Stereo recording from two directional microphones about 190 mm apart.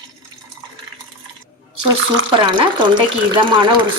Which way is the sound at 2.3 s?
25° right (ahead or behind).